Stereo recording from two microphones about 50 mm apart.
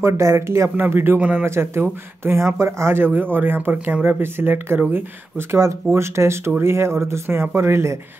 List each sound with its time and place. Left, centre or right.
0.0 s speech: right
0.7 s speech: right
1.4 s speech: right
2.5 s speech: right
3.7 s speech: right
4.0 s speech: right
5.5 s speech: right